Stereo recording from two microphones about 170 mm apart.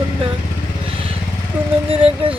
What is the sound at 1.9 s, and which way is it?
Speech, 35° right (ahead or behind).